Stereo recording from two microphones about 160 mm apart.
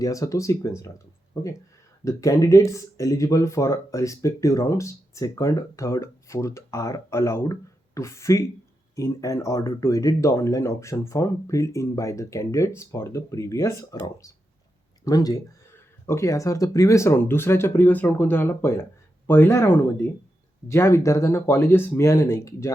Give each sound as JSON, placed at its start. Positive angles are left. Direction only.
{"t": 0.0, "sound": "speech", "side_deg": 20}